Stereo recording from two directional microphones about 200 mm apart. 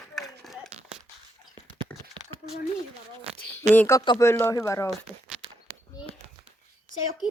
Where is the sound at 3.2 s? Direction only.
30° right (ahead or behind).